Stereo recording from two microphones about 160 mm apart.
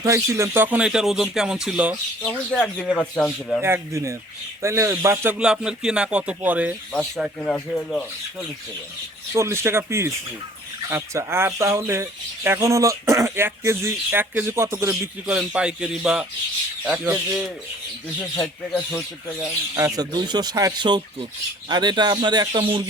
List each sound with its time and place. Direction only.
0.0 s speech: 20° right (ahead or behind); by 3.6 s 5° left (ahead or behind)
3.6 s speech: 15° right (ahead or behind)
7.2 s speech: 5° left (ahead or behind)
9.3 s speech: 15° right (ahead or behind)
15.3 s speech: 5° right (ahead or behind)
18.4 s speech: 5° left (ahead or behind)
19.7 s speech: 20° right (ahead or behind)